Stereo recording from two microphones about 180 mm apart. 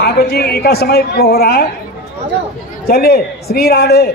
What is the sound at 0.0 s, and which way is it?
A man's voice, 60° left (ahead or behind).